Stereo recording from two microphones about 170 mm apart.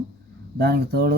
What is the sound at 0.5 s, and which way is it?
Speech, 70° right (ahead or behind).